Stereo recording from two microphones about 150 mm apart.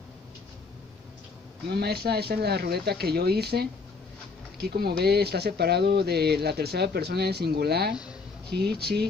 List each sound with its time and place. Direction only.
1.7 s speech: 90° right